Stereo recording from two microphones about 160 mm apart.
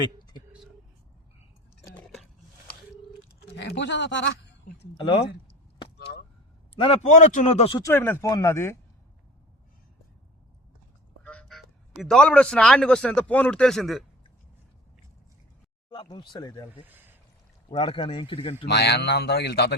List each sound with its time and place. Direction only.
1.9 s a sound: centre (ahead or behind)
3.5 s speech: 90° left
4.9 s speech: 30° left (ahead or behind)
7.0 s speech: 50° left (ahead or behind)
7.8 s speech: 15° left (ahead or behind)
11.2 s speech: 5° left (ahead or behind)
15.9 s speech: 30° left (ahead or behind)
16.8 s a sound: 10° right (ahead or behind)
17.7 s speech: 35° left (ahead or behind)
18.7 s speech: 90° left